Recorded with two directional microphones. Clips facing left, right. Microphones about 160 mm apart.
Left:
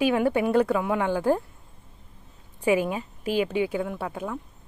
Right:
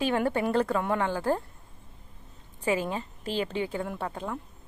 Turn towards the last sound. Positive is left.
turn(degrees=5)  # may be behind; listen again after turning